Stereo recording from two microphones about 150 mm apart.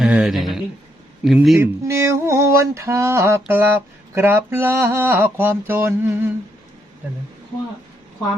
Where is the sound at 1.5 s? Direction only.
20° right (ahead or behind).